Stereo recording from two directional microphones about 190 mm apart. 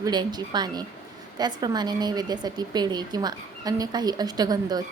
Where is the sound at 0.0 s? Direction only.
20° right (ahead or behind).